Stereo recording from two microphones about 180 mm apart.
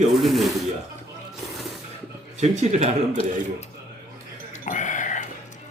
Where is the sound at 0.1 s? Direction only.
Centre (ahead or behind).